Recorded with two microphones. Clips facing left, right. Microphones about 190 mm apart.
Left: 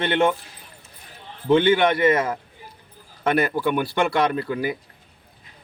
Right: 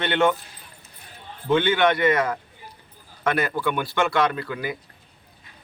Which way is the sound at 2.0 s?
30° left (ahead or behind).